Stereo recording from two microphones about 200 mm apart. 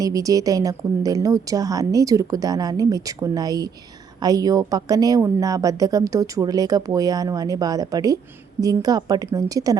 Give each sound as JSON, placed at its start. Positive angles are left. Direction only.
{"t": 0.0, "sound": "a woman's voice", "side_deg": -15}